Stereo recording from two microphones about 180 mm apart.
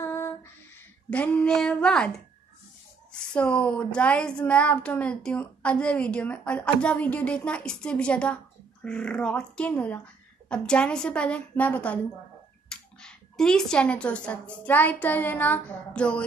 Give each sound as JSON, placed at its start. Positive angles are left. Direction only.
{"t": 0.0, "sound": "female singing", "side_deg": 15}
{"t": 3.1, "sound": "speech", "side_deg": 5}